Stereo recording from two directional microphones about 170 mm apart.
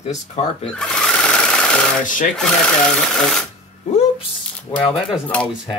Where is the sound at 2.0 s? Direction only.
50° left (ahead or behind).